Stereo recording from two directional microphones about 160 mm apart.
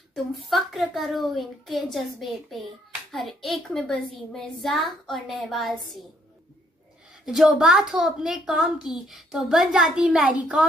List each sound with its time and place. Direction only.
0.1 s a child's voice: centre (ahead or behind)
7.2 s a child's voice: 5° right (ahead or behind)